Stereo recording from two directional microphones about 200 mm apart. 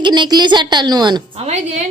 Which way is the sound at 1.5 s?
35° right (ahead or behind).